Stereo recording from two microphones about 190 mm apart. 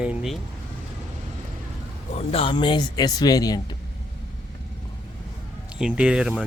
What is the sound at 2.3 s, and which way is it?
Speech, 30° left (ahead or behind).